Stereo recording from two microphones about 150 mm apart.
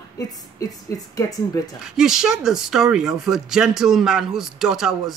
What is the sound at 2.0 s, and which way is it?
Speech, 5° right (ahead or behind).